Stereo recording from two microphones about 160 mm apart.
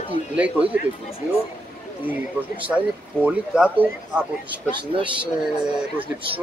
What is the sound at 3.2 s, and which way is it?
Speech, 10° right (ahead or behind).